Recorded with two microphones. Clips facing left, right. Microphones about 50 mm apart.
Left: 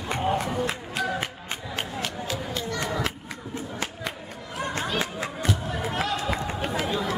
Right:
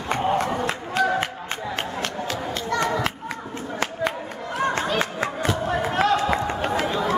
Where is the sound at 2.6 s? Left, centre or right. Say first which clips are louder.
Right 9 dB; right.